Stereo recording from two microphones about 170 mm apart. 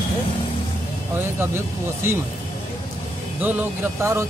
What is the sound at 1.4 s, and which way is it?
Speech, 15° right (ahead or behind).